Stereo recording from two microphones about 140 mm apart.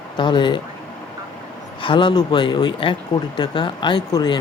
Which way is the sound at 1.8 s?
35° left (ahead or behind).